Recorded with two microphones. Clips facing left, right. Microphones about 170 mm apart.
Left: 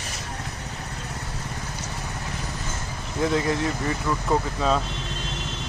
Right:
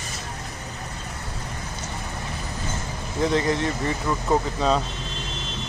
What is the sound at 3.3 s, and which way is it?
Speech, 5° left (ahead or behind).